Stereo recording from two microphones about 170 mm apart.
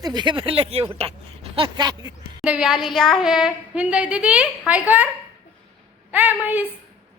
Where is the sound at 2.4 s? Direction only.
5° right (ahead or behind).